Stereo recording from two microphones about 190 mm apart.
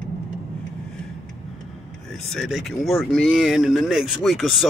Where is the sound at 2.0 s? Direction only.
Centre (ahead or behind).